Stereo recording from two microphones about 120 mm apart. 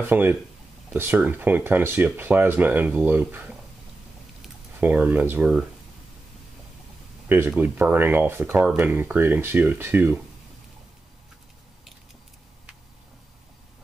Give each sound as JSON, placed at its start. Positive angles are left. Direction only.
{"t": 0.0, "sound": "speech", "side_deg": -20}
{"t": 4.7, "sound": "speech", "side_deg": -15}
{"t": 7.2, "sound": "speech", "side_deg": -15}